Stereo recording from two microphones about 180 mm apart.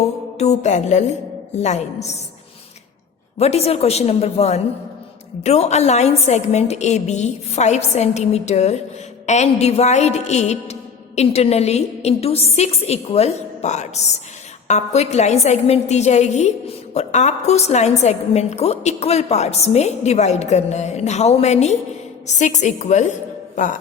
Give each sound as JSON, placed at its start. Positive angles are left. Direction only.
{"t": 0.3, "sound": "a woman's voice", "side_deg": 40}
{"t": 3.3, "sound": "a woman's voice", "side_deg": 35}